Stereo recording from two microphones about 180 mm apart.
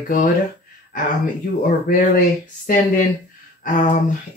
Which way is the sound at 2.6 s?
50° left (ahead or behind).